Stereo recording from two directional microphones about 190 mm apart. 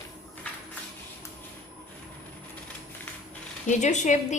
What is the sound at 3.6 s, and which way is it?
Speech, 40° left (ahead or behind).